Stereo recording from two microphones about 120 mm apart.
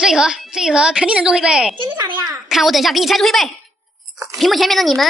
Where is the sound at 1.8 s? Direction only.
40° right (ahead or behind).